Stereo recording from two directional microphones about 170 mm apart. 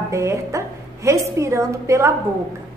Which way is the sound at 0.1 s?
15° right (ahead or behind).